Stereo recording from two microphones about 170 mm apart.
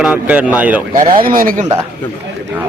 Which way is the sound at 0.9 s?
55° right (ahead or behind).